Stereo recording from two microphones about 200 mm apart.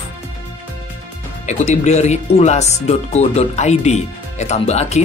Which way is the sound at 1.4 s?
35° left (ahead or behind).